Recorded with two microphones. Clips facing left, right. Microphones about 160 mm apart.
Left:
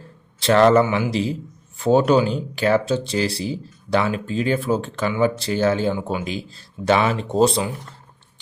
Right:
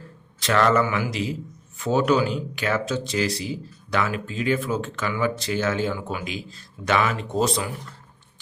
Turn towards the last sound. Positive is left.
turn(degrees=30)  # may be behind; listen again after turning